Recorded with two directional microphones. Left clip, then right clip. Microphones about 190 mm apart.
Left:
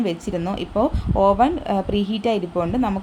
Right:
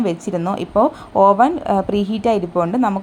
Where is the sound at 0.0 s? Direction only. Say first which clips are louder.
Right 4 dB; 15° right (ahead or behind).